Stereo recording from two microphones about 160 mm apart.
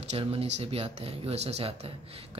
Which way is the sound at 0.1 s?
35° right (ahead or behind).